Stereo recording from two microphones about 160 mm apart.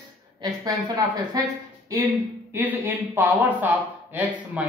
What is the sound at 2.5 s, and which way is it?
Speech, 10° right (ahead or behind).